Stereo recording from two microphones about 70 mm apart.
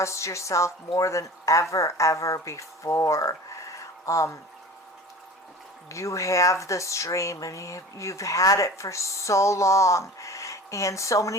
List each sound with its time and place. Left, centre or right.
0.0 s speech: left
5.9 s speech: left